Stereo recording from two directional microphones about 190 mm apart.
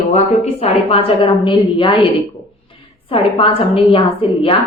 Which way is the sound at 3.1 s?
30° left (ahead or behind).